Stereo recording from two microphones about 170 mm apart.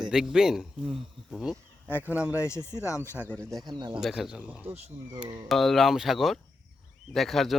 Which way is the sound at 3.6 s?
25° right (ahead or behind).